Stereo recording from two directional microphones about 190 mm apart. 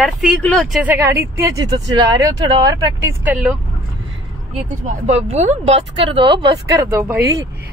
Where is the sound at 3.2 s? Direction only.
5° right (ahead or behind).